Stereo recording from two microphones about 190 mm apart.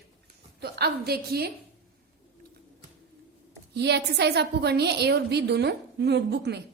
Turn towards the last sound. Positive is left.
turn(degrees=-60)  # may be behind; listen again after turning